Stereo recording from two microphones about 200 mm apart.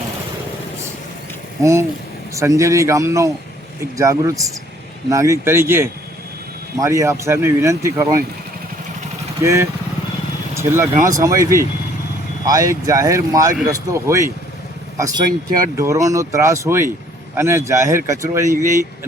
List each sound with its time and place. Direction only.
1.6 s speech: 15° right (ahead or behind)
9.4 s speech: 15° right (ahead or behind)